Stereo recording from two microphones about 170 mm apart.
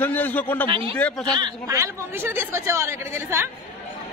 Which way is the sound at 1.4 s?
20° right (ahead or behind).